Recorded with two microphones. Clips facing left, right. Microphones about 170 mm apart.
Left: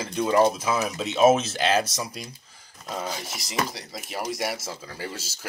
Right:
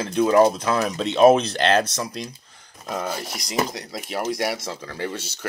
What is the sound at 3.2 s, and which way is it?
Speech, centre (ahead or behind).